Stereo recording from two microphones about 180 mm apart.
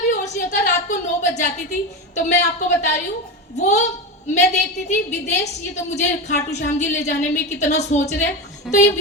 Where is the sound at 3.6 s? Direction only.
40° left (ahead or behind).